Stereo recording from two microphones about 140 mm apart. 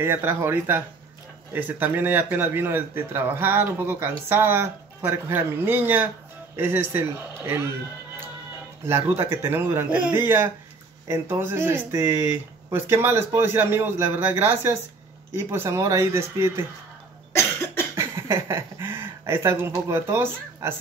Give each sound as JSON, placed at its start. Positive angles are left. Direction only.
{"t": 0.0, "sound": "speech", "side_deg": -15}
{"t": 8.8, "sound": "speech", "side_deg": -20}
{"t": 17.3, "sound": "cough", "side_deg": 20}
{"t": 17.9, "sound": "speech", "side_deg": -20}